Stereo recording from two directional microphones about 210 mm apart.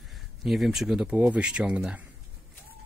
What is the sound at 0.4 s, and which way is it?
Speech, centre (ahead or behind).